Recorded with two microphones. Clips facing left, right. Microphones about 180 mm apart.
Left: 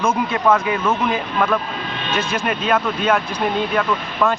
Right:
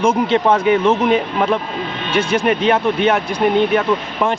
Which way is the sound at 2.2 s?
15° right (ahead or behind).